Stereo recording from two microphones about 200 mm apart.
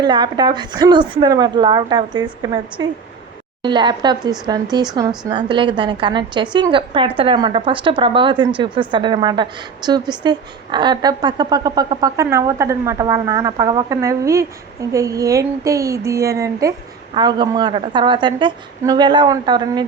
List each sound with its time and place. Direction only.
0.0 s speech: 20° right (ahead or behind)